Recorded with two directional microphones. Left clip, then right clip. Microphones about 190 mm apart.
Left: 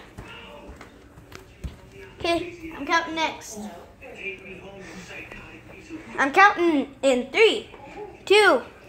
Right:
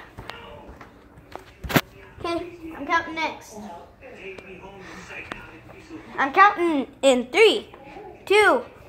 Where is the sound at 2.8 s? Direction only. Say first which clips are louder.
Left 1 dB; 25° right (ahead or behind).